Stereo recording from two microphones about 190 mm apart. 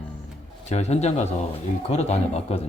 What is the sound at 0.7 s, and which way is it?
Speech, 35° left (ahead or behind).